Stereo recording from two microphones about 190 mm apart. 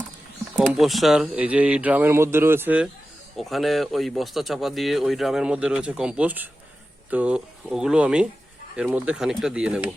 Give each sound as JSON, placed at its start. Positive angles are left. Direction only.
{"t": 0.5, "sound": "speech", "side_deg": -5}